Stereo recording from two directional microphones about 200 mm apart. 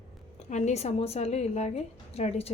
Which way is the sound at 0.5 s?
35° left (ahead or behind).